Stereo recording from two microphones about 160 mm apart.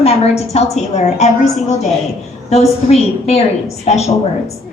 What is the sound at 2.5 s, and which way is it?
Speech, 40° left (ahead or behind).